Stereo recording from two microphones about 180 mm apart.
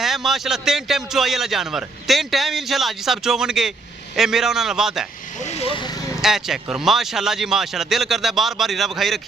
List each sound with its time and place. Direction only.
0.0 s a man's voice: centre (ahead or behind)
5.4 s vehicle: 35° left (ahead or behind)
6.2 s a man's voice: centre (ahead or behind)